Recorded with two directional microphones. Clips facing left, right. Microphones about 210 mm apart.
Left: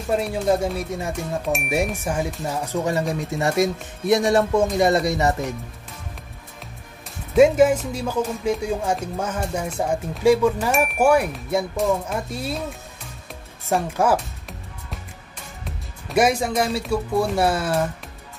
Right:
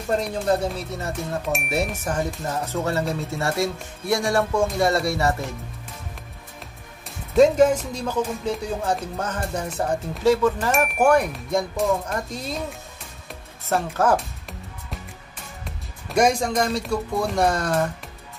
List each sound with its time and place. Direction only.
0.0 s speech: 5° left (ahead or behind)
1.4 s speech: centre (ahead or behind); by 5.3 s 20° left (ahead or behind)
7.3 s speech: 10° left (ahead or behind)
10.7 s speech: centre (ahead or behind)
13.7 s speech: 15° left (ahead or behind)
15.6 s speech: centre (ahead or behind)